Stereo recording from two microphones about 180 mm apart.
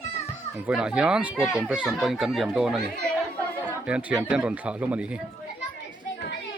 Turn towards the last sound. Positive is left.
turn(degrees=-5)  # may be behind; listen again after turning